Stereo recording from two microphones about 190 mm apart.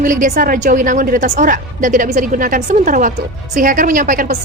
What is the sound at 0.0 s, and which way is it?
A woman's voice, 45° right (ahead or behind).